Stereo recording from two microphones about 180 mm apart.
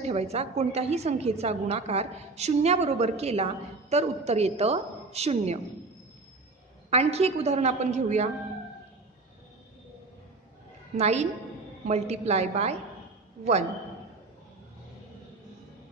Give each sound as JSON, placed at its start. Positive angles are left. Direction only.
{"t": 0.0, "sound": "a woman's voice", "side_deg": -35}
{"t": 6.9, "sound": "a woman's voice", "side_deg": -35}
{"t": 11.0, "sound": "a woman's voice", "side_deg": -35}